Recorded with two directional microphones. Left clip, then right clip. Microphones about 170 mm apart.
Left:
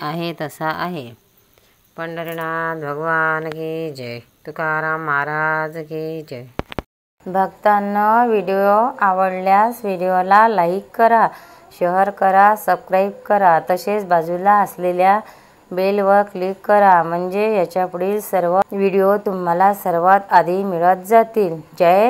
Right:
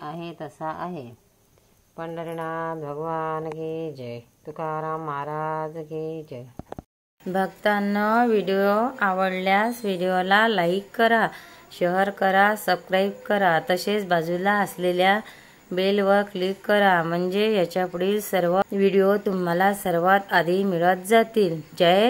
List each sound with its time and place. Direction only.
0.0 s a woman's voice: 40° left (ahead or behind)
2.0 s speech: 10° left (ahead or behind)
7.4 s speech: 30° right (ahead or behind)